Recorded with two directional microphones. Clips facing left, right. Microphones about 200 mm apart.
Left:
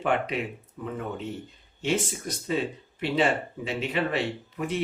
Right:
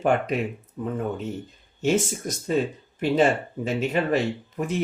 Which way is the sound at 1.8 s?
45° right (ahead or behind).